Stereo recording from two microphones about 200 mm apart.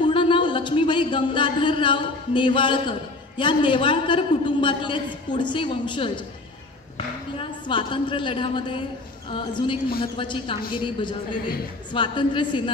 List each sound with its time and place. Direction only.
0.0 s speech: 25° left (ahead or behind)
7.3 s a woman's voice: 25° left (ahead or behind)